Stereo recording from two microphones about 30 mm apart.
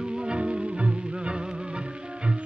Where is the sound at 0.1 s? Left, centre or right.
Right.